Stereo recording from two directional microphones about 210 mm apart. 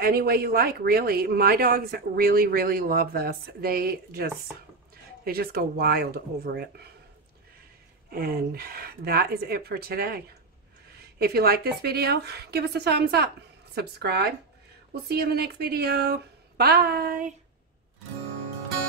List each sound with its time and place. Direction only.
0.0 s speech: 50° right (ahead or behind)
8.1 s speech: 45° right (ahead or behind)